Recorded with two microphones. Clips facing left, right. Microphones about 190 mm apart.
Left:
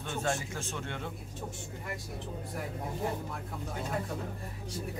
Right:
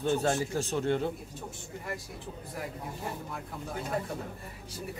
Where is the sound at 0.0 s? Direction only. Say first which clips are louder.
Right 6 dB; 35° right (ahead or behind).